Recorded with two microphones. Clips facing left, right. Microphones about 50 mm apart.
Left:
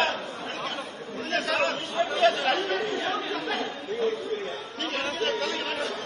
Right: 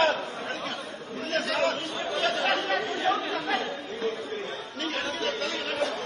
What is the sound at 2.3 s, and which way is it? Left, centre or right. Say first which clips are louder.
Chatter: left 1 dB; right.